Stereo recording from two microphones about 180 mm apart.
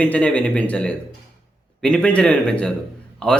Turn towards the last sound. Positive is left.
turn(degrees=5)  # may be behind; listen again after turning